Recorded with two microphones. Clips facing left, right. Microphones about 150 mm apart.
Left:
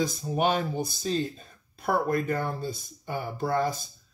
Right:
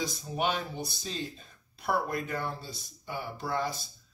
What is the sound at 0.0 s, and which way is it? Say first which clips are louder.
Speech: left 5 dB; 45° left (ahead or behind).